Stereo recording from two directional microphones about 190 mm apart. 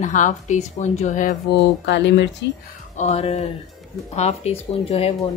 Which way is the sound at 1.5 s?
65° left (ahead or behind).